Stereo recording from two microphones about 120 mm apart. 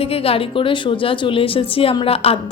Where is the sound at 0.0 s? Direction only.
55° left (ahead or behind).